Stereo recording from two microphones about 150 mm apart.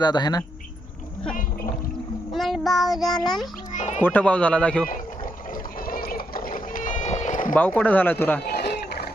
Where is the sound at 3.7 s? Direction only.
50° left (ahead or behind).